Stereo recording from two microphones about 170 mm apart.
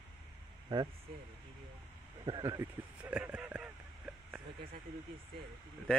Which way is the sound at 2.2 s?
25° right (ahead or behind).